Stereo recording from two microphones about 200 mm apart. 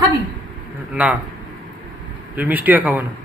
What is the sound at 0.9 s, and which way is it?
Speech, 5° right (ahead or behind).